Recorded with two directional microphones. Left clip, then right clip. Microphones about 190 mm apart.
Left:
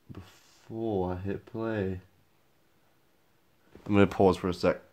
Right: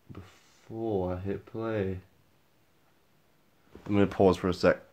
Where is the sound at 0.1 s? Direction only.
40° left (ahead or behind).